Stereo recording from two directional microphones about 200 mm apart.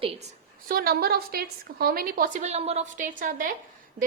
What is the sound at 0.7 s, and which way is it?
A woman's voice, 50° right (ahead or behind).